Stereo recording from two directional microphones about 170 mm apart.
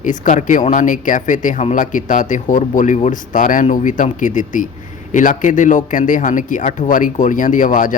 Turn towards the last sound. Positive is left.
turn(degrees=50)  # may be behind; listen again after turning